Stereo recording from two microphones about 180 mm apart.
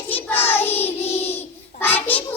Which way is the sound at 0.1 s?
10° left (ahead or behind).